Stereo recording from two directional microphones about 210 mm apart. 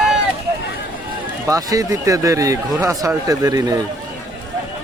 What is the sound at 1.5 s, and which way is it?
A man's voice, 15° right (ahead or behind).